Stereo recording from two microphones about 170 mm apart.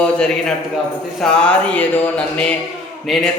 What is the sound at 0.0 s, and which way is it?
Mantra, 5° left (ahead or behind).